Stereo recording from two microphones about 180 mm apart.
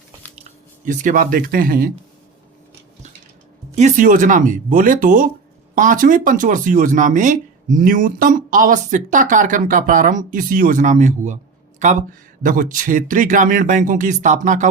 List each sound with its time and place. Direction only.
0.9 s speech: 45° right (ahead or behind)
3.8 s speech: 45° right (ahead or behind)